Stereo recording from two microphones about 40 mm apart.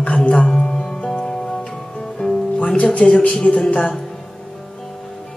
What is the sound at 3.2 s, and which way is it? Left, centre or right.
Speech, left.